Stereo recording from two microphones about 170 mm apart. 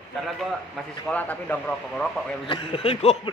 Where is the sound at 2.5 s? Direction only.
30° left (ahead or behind).